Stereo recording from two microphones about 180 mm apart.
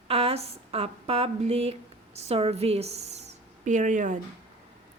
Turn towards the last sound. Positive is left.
turn(degrees=-45)  # may be behind; listen again after turning